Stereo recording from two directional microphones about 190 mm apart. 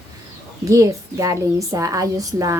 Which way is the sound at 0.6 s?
15° right (ahead or behind).